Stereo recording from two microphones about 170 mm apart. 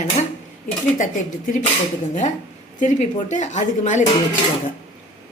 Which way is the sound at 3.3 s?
45° left (ahead or behind).